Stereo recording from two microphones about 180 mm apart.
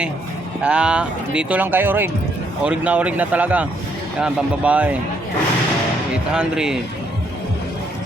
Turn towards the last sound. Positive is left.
turn(degrees=-5)  # may be behind; listen again after turning